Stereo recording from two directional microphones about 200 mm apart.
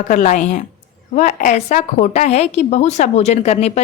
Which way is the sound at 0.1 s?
40° left (ahead or behind).